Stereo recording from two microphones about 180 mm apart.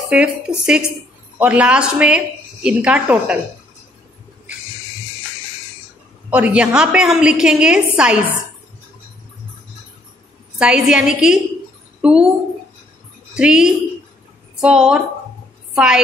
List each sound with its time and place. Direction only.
0.1 s a woman's voice: 5° right (ahead or behind)
6.3 s a woman's voice: 5° right (ahead or behind)
10.6 s a woman's voice: 5° right (ahead or behind)
13.4 s a woman's voice: 5° right (ahead or behind)